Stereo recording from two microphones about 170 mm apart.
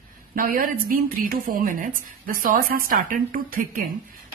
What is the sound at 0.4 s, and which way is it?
A woman's voice, 55° right (ahead or behind).